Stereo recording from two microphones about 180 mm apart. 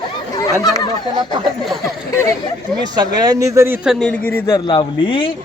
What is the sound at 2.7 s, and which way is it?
Speech, 25° right (ahead or behind).